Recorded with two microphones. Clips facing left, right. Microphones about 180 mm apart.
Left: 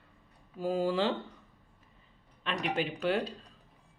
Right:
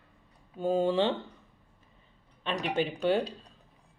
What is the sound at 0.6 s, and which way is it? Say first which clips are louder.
Speech: right 3 dB; 25° right (ahead or behind).